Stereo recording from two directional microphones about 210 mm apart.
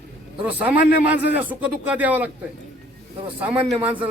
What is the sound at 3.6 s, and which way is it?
Speech, 25° right (ahead or behind).